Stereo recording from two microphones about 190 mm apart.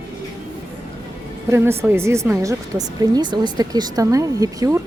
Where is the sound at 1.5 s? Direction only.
15° right (ahead or behind).